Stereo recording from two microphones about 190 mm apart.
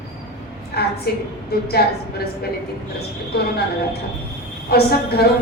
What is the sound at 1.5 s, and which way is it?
A woman's voice, 55° left (ahead or behind).